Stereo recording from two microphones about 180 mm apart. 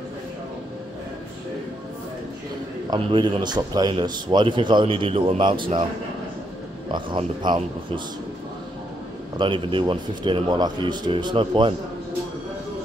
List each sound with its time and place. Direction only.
2.9 s a man's voice: 25° right (ahead or behind)
6.9 s a man's voice: 25° right (ahead or behind)
9.4 s a man's voice: 25° right (ahead or behind)